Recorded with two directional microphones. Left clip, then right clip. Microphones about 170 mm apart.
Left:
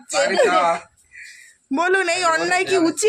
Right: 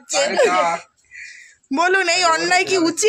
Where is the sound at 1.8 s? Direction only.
Centre (ahead or behind).